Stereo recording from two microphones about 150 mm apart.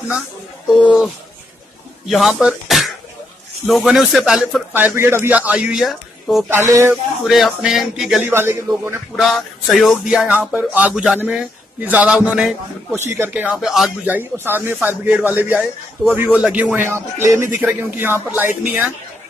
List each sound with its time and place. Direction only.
0.8 s music: 5° right (ahead or behind)
2.0 s speech: centre (ahead or behind)
3.6 s music: centre (ahead or behind)
4.7 s speech: 15° right (ahead or behind)
6.7 s speech: 15° right (ahead or behind)
7.2 s music: centre (ahead or behind)
8.3 s speech: 15° right (ahead or behind)
9.1 s speech: centre (ahead or behind)
14.0 s speech: 15° right (ahead or behind)